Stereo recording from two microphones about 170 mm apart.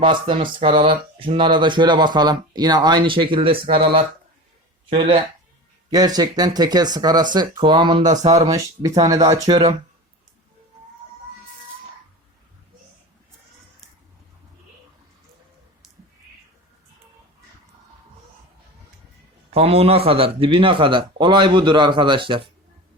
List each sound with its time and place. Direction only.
0.0 s speech: 30° right (ahead or behind)
19.5 s speech: 35° right (ahead or behind)